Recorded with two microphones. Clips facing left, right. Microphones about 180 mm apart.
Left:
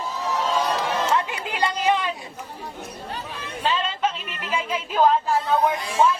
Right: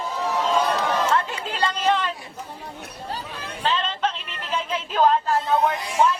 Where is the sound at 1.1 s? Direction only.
15° left (ahead or behind).